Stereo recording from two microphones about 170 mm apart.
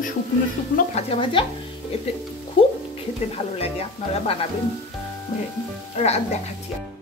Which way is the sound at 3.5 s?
35° left (ahead or behind).